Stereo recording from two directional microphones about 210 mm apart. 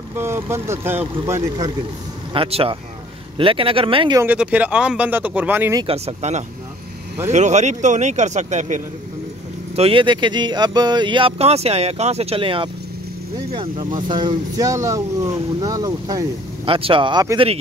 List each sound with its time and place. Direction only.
0.1 s speech: 10° right (ahead or behind)
2.3 s speech: 25° right (ahead or behind)
4.2 s speech: 5° right (ahead or behind)
5.9 s speech: 30° right (ahead or behind)